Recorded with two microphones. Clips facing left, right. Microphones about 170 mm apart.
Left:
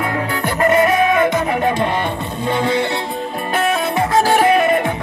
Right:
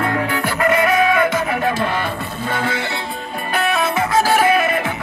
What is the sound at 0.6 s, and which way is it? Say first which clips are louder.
Music: left 4 dB; 45° left (ahead or behind).